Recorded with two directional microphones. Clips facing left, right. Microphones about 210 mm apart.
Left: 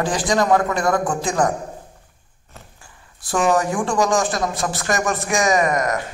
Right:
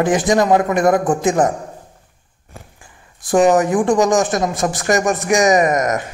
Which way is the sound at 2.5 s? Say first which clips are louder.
Right 4 dB; 15° right (ahead or behind).